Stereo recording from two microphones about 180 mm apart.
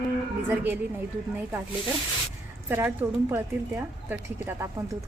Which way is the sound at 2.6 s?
10° right (ahead or behind).